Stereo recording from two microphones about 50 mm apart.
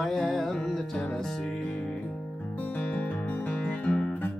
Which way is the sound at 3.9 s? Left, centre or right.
Left.